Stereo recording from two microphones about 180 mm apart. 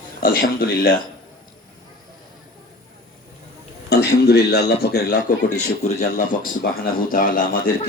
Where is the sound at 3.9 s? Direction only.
65° left (ahead or behind).